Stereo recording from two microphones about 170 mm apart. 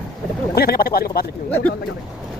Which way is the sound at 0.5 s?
65° left (ahead or behind).